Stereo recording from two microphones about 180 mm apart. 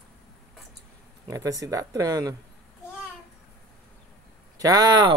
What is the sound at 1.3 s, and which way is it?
Speech, 20° right (ahead or behind).